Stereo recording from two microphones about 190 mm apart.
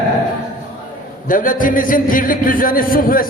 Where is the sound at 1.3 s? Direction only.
45° left (ahead or behind).